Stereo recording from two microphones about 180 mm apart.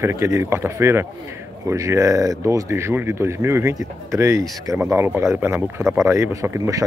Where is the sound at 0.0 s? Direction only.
15° right (ahead or behind).